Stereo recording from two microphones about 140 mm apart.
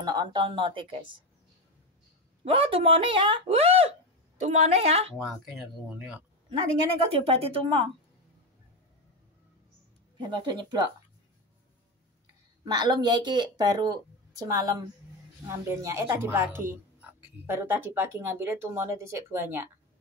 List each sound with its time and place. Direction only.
0.0 s speech: 30° right (ahead or behind)
2.4 s a woman's voice: 40° right (ahead or behind)
5.2 s speech: centre (ahead or behind)
7.1 s a woman's voice: 45° right (ahead or behind)
10.1 s speech: 30° right (ahead or behind)
12.6 s a woman's voice: 30° right (ahead or behind)